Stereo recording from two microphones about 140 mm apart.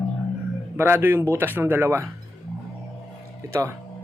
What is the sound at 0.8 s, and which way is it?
A man's voice, 15° right (ahead or behind).